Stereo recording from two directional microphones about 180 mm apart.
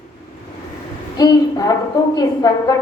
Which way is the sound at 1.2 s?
20° left (ahead or behind).